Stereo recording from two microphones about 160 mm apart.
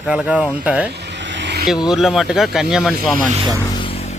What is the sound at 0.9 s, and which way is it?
Vehicle, 90° right.